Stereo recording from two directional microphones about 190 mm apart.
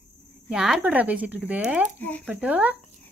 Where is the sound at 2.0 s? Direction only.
10° left (ahead or behind).